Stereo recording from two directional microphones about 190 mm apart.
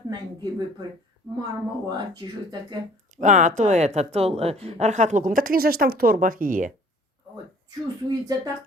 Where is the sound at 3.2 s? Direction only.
40° right (ahead or behind).